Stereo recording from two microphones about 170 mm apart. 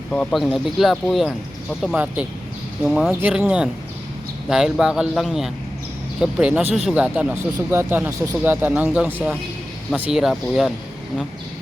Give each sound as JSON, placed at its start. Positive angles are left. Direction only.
{"t": 0.1, "sound": "speech", "side_deg": 5}